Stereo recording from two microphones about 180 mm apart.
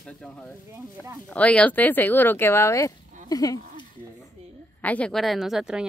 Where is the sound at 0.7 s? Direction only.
15° right (ahead or behind).